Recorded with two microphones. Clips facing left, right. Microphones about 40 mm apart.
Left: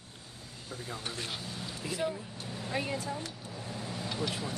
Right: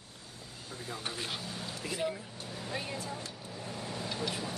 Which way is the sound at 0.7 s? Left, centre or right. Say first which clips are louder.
Even; centre.